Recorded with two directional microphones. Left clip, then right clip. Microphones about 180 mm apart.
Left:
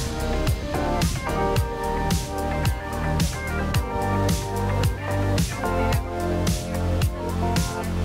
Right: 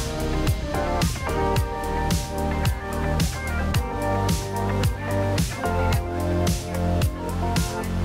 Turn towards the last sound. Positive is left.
turn(degrees=0)  # may be behind; listen again after turning